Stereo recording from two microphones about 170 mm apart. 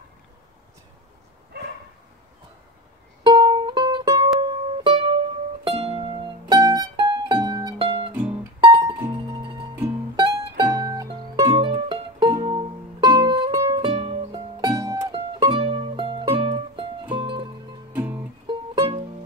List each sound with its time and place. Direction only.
3.3 s music: 25° right (ahead or behind)
4.8 s music: 35° right (ahead or behind)
8.1 s music: 10° right (ahead or behind)
8.6 s music: 30° right (ahead or behind)
17.9 s music: 10° right (ahead or behind)
18.5 s music: 30° right (ahead or behind)